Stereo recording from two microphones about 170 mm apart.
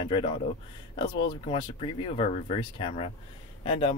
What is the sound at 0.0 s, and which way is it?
Speech, 30° left (ahead or behind).